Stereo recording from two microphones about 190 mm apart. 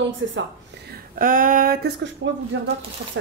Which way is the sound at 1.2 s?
45° right (ahead or behind).